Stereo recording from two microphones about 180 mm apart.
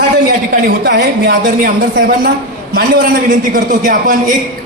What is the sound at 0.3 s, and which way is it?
A woman's voice, 60° right (ahead or behind).